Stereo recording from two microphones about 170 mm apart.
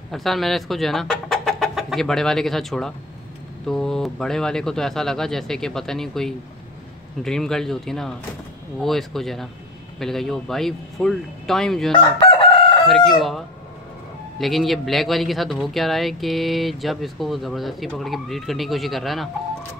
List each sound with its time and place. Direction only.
0.1 s a man's voice: centre (ahead or behind)
11.9 s chicken: 30° left (ahead or behind)
12.8 s a man's voice: centre (ahead or behind)
14.4 s a man's voice: centre (ahead or behind)